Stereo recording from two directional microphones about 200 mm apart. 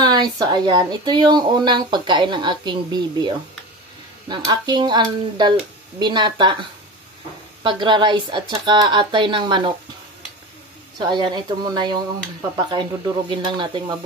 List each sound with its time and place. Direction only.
0.0 s speech: 20° right (ahead or behind)
7.6 s speech: 25° right (ahead or behind)
11.0 s speech: 20° right (ahead or behind)